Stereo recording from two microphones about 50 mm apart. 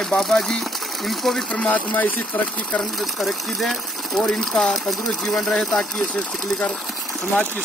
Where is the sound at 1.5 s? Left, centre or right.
Left.